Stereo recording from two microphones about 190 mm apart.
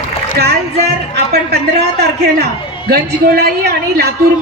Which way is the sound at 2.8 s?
55° right (ahead or behind).